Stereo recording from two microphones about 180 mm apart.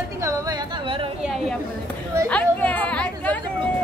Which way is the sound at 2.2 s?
10° left (ahead or behind).